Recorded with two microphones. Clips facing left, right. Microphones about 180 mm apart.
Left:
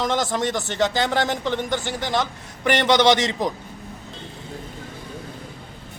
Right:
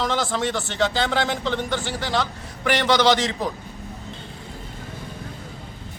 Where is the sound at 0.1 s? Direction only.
15° left (ahead or behind).